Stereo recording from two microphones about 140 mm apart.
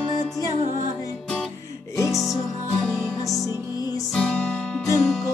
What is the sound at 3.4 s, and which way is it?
Music, 25° left (ahead or behind).